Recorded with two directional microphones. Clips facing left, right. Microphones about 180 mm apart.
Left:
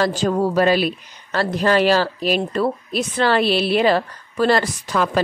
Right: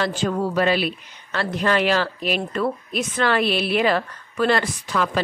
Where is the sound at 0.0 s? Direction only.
40° left (ahead or behind).